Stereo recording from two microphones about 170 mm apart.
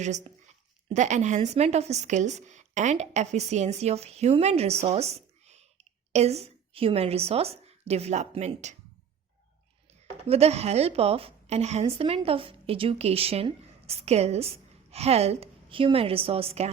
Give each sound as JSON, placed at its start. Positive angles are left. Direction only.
{"t": 0.0, "sound": "a woman's voice", "side_deg": -45}
{"t": 10.2, "sound": "a woman's voice", "side_deg": -40}